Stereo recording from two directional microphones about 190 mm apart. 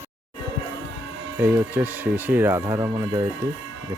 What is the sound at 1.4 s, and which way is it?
Speech, 10° right (ahead or behind).